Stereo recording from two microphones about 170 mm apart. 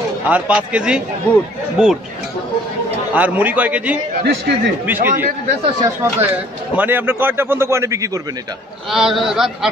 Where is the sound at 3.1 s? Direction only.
10° right (ahead or behind).